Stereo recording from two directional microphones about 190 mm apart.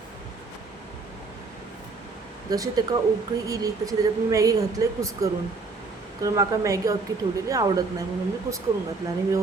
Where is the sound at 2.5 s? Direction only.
20° right (ahead or behind).